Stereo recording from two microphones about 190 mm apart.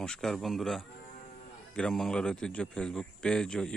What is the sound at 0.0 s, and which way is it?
Speech, 5° left (ahead or behind).